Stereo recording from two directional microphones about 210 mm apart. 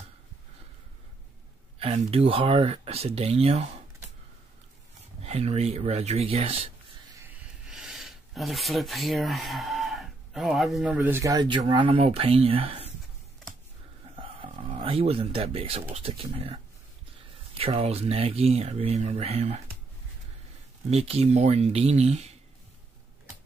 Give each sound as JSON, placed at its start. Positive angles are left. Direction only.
{"t": 1.8, "sound": "speech", "side_deg": -30}
{"t": 5.2, "sound": "speech", "side_deg": -30}
{"t": 7.7, "sound": "speech", "side_deg": 0}
{"t": 14.1, "sound": "speech", "side_deg": -25}
{"t": 17.6, "sound": "speech", "side_deg": -25}
{"t": 20.9, "sound": "speech", "side_deg": -30}